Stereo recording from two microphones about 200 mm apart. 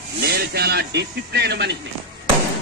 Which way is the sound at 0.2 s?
50° right (ahead or behind).